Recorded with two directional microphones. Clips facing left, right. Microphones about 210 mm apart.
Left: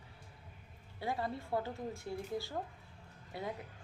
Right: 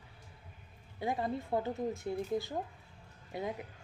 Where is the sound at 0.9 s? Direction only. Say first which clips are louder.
Right 4 dB; 20° right (ahead or behind).